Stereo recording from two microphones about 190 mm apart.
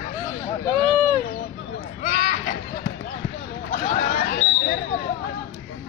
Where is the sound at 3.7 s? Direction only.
40° left (ahead or behind).